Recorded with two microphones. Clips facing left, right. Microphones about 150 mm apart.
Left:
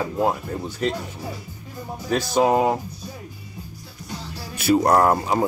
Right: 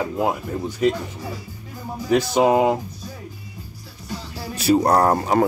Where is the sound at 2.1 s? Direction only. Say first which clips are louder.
Right 2 dB; 15° right (ahead or behind).